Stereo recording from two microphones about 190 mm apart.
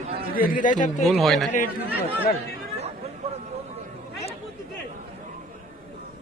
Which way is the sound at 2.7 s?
35° right (ahead or behind).